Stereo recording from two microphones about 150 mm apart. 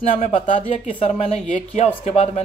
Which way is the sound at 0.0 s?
55° left (ahead or behind).